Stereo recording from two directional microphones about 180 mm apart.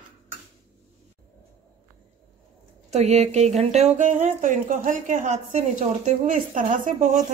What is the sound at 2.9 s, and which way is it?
A woman's voice, 40° right (ahead or behind).